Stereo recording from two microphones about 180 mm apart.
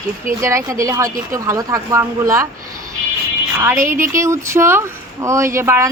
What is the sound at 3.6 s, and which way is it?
Speech, 15° right (ahead or behind).